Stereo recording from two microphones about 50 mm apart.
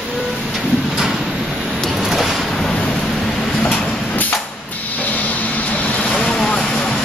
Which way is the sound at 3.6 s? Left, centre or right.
Left.